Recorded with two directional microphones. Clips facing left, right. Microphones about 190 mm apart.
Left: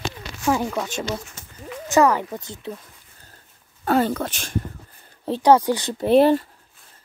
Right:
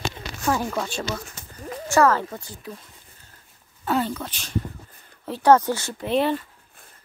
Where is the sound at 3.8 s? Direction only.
50° left (ahead or behind).